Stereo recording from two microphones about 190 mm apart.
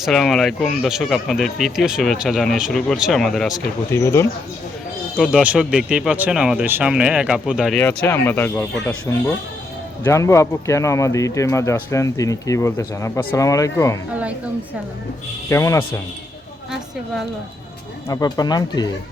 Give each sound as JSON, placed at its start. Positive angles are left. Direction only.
{"t": 0.0, "sound": "speech", "side_deg": 0}
{"t": 3.9, "sound": "speech", "side_deg": 15}
{"t": 5.1, "sound": "speech", "side_deg": -5}
{"t": 7.8, "sound": "speech", "side_deg": 10}
{"t": 15.4, "sound": "speech", "side_deg": 15}
{"t": 18.1, "sound": "speech", "side_deg": 20}